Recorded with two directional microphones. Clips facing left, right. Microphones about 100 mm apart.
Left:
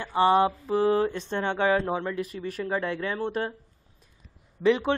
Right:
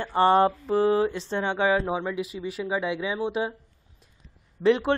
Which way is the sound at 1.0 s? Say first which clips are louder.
Right 1 dB; 15° right (ahead or behind).